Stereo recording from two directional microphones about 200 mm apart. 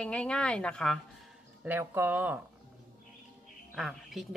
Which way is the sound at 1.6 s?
10° right (ahead or behind).